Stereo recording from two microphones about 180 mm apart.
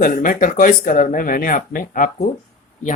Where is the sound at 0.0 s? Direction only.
50° left (ahead or behind).